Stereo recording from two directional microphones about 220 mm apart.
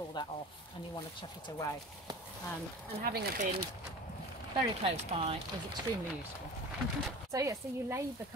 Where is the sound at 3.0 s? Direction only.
45° right (ahead or behind).